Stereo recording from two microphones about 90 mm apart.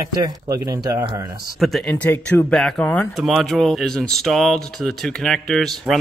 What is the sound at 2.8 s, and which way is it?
Speech, 20° left (ahead or behind).